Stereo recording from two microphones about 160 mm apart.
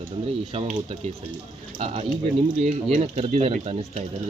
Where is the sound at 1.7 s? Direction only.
35° right (ahead or behind).